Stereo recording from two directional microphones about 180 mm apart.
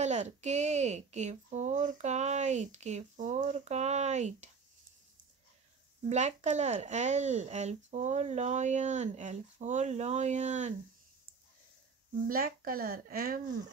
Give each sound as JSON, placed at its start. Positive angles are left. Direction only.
{"t": 0.0, "sound": "speech", "side_deg": -40}
{"t": 6.0, "sound": "speech", "side_deg": -40}
{"t": 12.3, "sound": "speech", "side_deg": -55}